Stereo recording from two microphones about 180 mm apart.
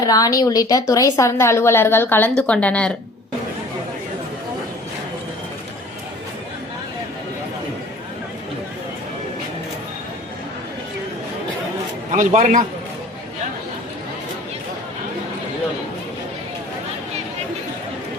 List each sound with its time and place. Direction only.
0.0 s a woman's voice: 20° left (ahead or behind)
12.1 s a man's voice: 45° right (ahead or behind)